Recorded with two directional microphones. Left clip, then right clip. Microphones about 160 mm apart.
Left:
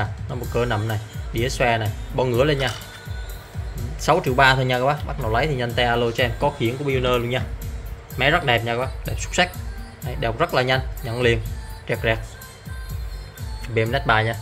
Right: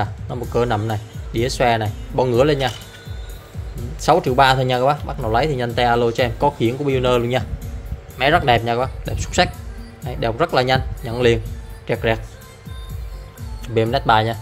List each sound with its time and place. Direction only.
0.5 s speech: 20° right (ahead or behind)
4.0 s speech: 15° right (ahead or behind)
13.7 s speech: 20° right (ahead or behind)